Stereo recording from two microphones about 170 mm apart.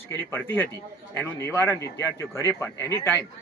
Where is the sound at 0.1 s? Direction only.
15° left (ahead or behind).